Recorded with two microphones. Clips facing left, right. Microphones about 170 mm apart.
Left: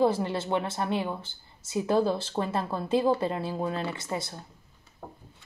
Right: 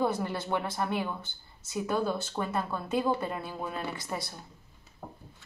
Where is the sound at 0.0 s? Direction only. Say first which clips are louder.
Left 5 dB; 25° left (ahead or behind).